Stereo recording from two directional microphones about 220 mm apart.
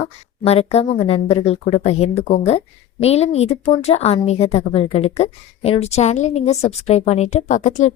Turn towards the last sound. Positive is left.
turn(degrees=35)  # may be behind; listen again after turning